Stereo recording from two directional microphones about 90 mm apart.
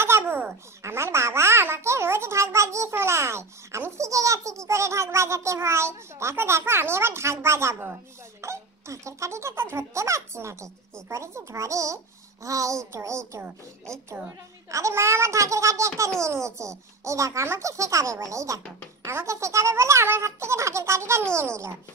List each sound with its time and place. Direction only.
0.0 s babbling: 25° right (ahead or behind)
0.8 s a child's voice: 30° right (ahead or behind)
14.7 s a child's voice: 35° right (ahead or behind)